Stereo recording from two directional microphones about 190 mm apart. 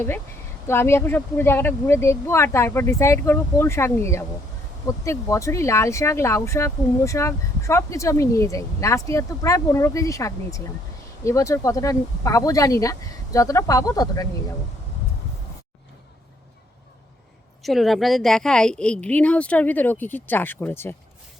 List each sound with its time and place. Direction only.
0.7 s speech: 10° left (ahead or behind)
17.6 s speech: centre (ahead or behind)